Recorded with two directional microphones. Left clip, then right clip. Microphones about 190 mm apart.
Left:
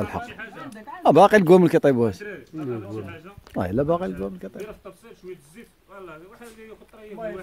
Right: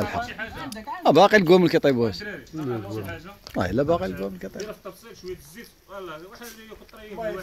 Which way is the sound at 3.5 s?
25° left (ahead or behind).